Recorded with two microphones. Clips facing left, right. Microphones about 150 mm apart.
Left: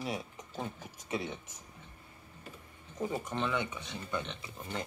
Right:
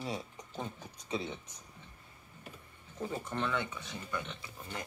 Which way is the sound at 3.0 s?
15° left (ahead or behind).